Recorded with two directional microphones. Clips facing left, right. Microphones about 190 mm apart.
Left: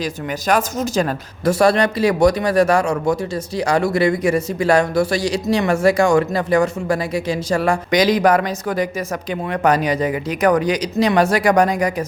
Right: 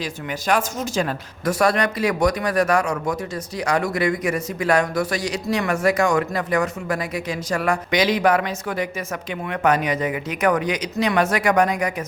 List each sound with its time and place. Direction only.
0.0 s a man's voice: 40° left (ahead or behind)
1.5 s a man's voice: 30° left (ahead or behind)